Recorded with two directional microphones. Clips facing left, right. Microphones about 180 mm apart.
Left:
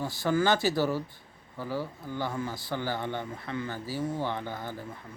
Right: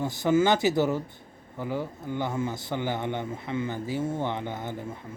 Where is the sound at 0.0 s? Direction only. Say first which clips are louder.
Right 4 dB; 20° right (ahead or behind).